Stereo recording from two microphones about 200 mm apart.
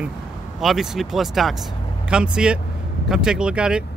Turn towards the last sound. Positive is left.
turn(degrees=-5)  # may be behind; listen again after turning